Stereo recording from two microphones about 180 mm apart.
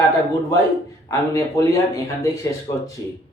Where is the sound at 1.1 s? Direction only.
15° left (ahead or behind).